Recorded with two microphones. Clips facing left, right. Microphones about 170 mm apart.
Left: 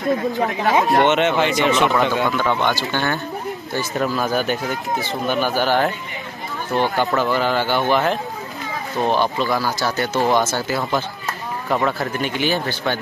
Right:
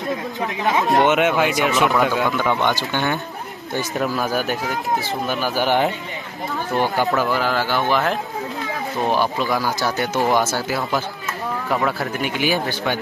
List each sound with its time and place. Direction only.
0.8 s speech: 5° right (ahead or behind)
2.3 s speech: 15° right (ahead or behind)
5.6 s speech: 15° right (ahead or behind)